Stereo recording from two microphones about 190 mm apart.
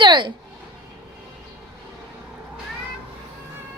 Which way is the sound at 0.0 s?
25° right (ahead or behind).